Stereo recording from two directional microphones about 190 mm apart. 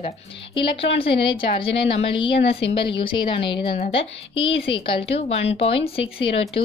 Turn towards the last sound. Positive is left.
turn(degrees=30)  # may be behind; listen again after turning